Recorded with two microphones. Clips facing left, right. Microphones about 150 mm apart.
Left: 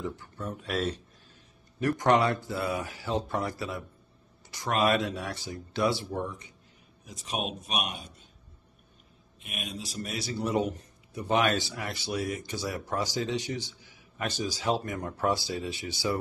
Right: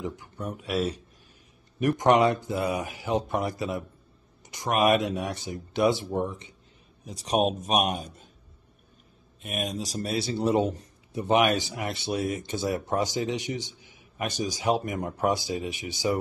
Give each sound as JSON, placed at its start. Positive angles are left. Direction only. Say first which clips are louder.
{"t": 0.0, "sound": "speech", "louder": "right 2 dB", "side_deg": -15}
{"t": 7.1, "sound": "speech", "louder": "right 9 dB", "side_deg": -35}
{"t": 9.4, "sound": "a man's voice", "louder": "right 8 dB", "side_deg": -40}
{"t": 11.2, "sound": "speech", "louder": "right 3 dB", "side_deg": -15}